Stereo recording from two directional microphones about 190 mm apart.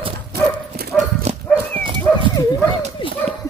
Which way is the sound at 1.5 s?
10° left (ahead or behind).